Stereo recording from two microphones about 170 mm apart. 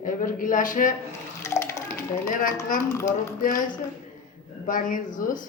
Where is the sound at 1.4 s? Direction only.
15° left (ahead or behind).